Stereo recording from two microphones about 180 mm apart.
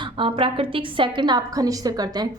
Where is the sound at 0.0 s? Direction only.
30° right (ahead or behind).